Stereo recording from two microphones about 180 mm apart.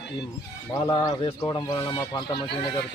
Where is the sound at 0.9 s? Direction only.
25° left (ahead or behind).